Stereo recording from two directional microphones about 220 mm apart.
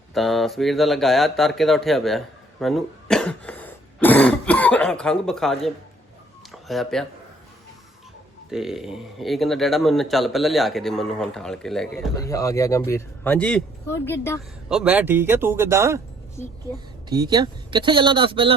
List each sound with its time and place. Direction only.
0.1 s speech: centre (ahead or behind)
6.5 s a sound: centre (ahead or behind)
8.4 s speech: centre (ahead or behind)
12.1 s a man's voice: 15° left (ahead or behind)
14.7 s speech: 5° right (ahead or behind)
17.1 s speech: 20° right (ahead or behind)